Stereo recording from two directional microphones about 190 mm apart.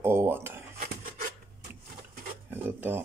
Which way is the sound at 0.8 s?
45° right (ahead or behind).